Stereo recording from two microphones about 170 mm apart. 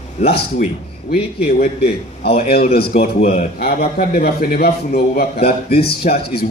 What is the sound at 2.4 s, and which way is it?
Speech, 65° left (ahead or behind).